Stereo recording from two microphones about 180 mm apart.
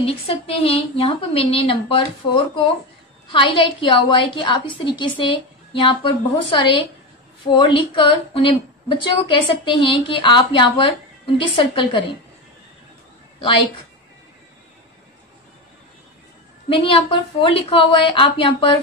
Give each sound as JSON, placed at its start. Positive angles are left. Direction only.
{"t": 0.0, "sound": "a woman's voice", "side_deg": 30}
{"t": 16.6, "sound": "a woman's voice", "side_deg": 30}